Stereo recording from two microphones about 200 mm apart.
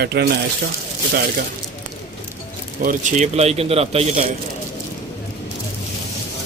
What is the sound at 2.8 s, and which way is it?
Speech, 40° right (ahead or behind).